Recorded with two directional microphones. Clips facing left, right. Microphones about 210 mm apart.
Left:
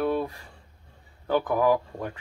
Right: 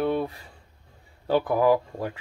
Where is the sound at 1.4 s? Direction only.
10° right (ahead or behind).